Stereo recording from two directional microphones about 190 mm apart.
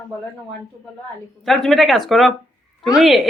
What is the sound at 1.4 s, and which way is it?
Speech, centre (ahead or behind).